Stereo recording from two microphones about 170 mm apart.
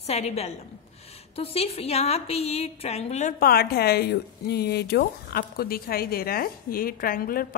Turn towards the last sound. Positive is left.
turn(degrees=60)  # may be behind; listen again after turning